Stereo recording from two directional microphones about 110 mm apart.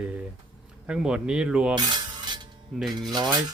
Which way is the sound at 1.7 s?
40° right (ahead or behind).